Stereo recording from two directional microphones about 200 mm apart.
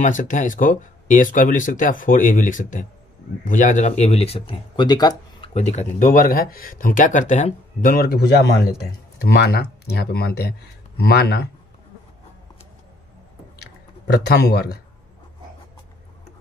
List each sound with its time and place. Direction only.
0.0 s speech: 40° left (ahead or behind); by 5.5 s 20° left (ahead or behind)
5.5 s speech: 35° left (ahead or behind); by 11.4 s 55° left (ahead or behind)
13.6 s a sound: 55° left (ahead or behind)